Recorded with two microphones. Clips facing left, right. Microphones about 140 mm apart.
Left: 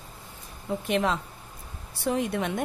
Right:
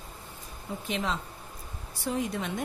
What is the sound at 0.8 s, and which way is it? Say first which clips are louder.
Speech: left 6 dB; 60° left (ahead or behind).